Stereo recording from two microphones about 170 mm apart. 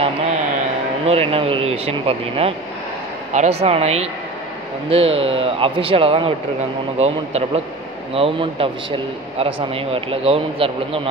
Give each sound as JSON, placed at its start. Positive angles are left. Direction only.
{"t": 1.0, "sound": "speech", "side_deg": -35}